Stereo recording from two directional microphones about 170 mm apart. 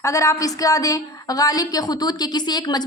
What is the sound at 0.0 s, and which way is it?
Speech, 20° left (ahead or behind).